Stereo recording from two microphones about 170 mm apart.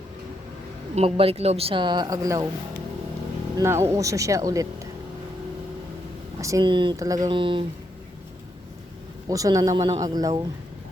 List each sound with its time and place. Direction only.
0.9 s speech: 35° right (ahead or behind); by 2.5 s 20° right (ahead or behind)
3.6 s speech: 15° right (ahead or behind)
6.4 s speech: 20° right (ahead or behind)
9.3 s speech: 20° right (ahead or behind)